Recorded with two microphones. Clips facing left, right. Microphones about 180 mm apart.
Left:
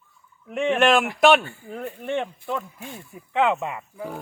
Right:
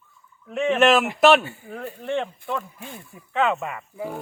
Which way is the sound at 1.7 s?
15° left (ahead or behind).